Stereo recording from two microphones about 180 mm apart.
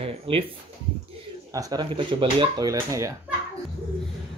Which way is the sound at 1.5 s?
25° right (ahead or behind).